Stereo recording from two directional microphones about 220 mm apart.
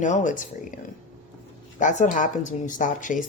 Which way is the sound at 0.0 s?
35° left (ahead or behind).